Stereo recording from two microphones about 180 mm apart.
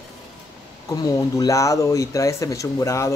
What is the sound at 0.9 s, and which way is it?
Speech, 20° left (ahead or behind).